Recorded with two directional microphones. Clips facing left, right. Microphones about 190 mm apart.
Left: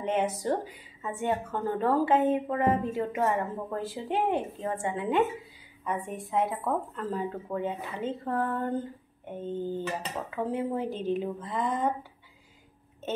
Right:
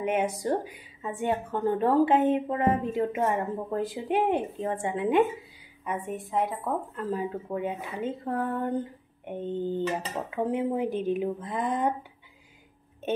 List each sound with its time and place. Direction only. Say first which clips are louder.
0.0 s speech: right 1 dB; 10° right (ahead or behind)
6.0 s speech: right 1 dB; centre (ahead or behind)
7.2 s speech: right 1 dB; 15° right (ahead or behind)